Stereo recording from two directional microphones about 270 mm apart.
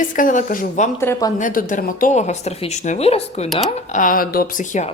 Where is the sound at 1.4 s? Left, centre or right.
Left.